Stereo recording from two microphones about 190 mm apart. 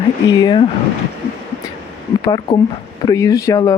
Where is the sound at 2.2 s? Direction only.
25° left (ahead or behind).